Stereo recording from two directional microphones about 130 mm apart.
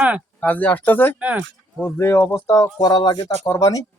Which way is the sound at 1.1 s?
10° right (ahead or behind).